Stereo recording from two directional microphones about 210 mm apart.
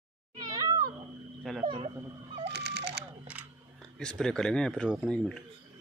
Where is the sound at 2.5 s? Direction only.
50° right (ahead or behind).